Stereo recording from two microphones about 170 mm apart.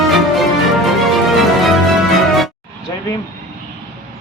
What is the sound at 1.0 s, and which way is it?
Music, centre (ahead or behind).